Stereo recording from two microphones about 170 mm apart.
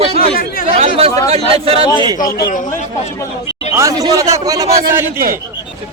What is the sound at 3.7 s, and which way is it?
Speech, 20° right (ahead or behind).